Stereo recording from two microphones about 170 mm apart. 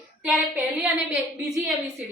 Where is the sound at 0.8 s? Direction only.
10° right (ahead or behind).